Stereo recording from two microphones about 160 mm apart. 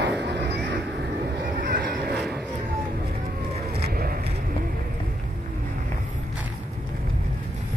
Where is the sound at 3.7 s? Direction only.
75° right (ahead or behind).